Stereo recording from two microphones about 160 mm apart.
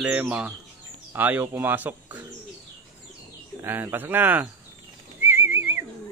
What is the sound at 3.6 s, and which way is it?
Speech, 15° right (ahead or behind).